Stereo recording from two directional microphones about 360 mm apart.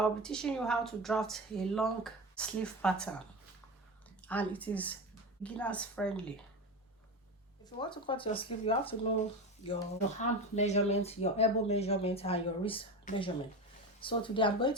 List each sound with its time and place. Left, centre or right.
0.0 s speech: centre
7.6 s speech: centre
10.2 s speech: centre